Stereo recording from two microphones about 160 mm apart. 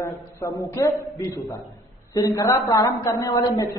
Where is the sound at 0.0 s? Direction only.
20° left (ahead or behind).